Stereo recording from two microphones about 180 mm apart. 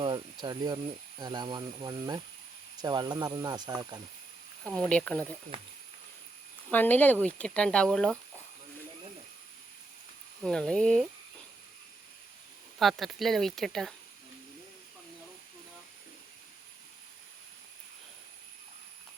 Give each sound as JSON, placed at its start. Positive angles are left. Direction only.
{"t": 0.0, "sound": "speech", "side_deg": -25}
{"t": 4.9, "sound": "speech", "side_deg": 5}
{"t": 6.7, "sound": "speech", "side_deg": 10}
{"t": 10.4, "sound": "speech", "side_deg": 5}
{"t": 12.8, "sound": "speech", "side_deg": 0}